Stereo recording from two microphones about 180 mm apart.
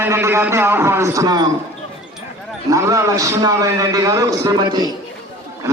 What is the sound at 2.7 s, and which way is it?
A man's voice, 15° right (ahead or behind).